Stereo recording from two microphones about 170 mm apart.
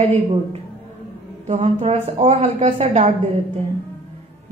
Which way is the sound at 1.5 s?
35° right (ahead or behind).